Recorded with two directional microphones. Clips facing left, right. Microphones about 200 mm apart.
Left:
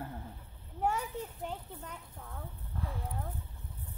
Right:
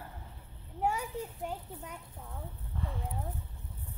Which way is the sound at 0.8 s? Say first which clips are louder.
Even; 5° right (ahead or behind).